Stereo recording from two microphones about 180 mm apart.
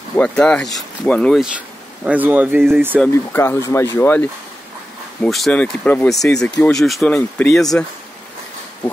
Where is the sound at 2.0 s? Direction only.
10° right (ahead or behind).